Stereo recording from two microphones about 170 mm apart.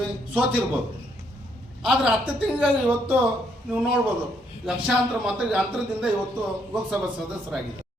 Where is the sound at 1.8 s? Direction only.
5° right (ahead or behind).